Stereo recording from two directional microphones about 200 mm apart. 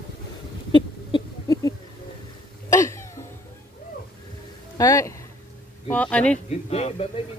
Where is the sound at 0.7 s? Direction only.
20° left (ahead or behind).